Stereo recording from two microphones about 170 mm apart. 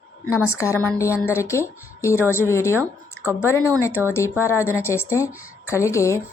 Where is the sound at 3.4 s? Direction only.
15° left (ahead or behind).